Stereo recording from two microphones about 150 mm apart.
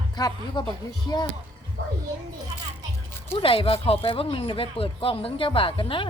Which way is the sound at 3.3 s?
35° left (ahead or behind).